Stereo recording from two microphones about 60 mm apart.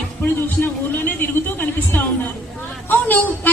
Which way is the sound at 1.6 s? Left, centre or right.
Left.